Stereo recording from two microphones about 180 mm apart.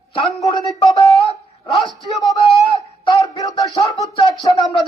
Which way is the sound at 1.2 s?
25° left (ahead or behind).